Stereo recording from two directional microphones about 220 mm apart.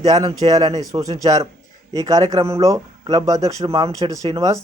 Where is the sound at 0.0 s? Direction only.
15° right (ahead or behind).